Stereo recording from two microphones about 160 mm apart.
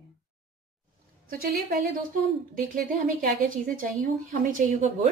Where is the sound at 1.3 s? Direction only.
65° right (ahead or behind).